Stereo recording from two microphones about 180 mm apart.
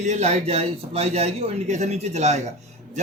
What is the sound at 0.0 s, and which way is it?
A man's voice, 40° right (ahead or behind).